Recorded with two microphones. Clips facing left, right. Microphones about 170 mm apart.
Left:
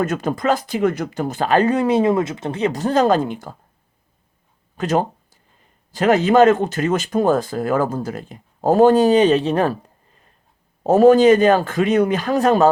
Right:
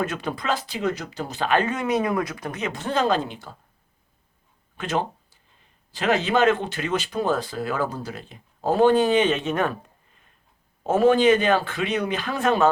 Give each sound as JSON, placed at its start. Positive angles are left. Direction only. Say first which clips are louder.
{"t": 0.0, "sound": "speech", "louder": "left 7 dB", "side_deg": 45}
{"t": 4.8, "sound": "a sound", "louder": "left 6 dB", "side_deg": 40}
{"t": 5.9, "sound": "speech", "louder": "left 7 dB", "side_deg": 45}
{"t": 10.8, "sound": "speech", "louder": "left 6 dB", "side_deg": 40}